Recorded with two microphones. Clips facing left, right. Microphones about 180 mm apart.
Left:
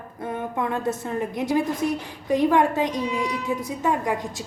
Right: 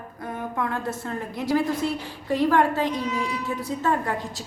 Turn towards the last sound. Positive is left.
turn(degrees=15)  # may be behind; listen again after turning